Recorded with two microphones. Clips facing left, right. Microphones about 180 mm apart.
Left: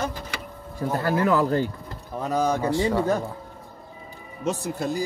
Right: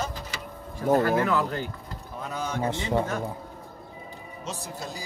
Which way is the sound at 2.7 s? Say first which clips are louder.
Left 4 dB; 20° right (ahead or behind).